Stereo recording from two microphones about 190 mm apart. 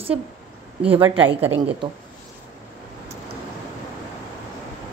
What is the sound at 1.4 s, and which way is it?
Speech, 10° right (ahead or behind).